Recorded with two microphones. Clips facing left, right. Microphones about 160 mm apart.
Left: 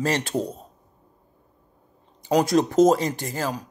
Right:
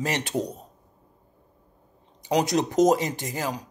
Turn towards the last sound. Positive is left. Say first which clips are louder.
# left 2 dB
turn(degrees=-20)  # may be behind; listen again after turning